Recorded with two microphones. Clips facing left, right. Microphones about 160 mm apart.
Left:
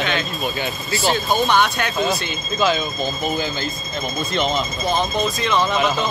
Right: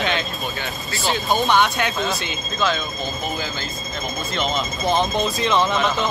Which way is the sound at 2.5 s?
5° left (ahead or behind).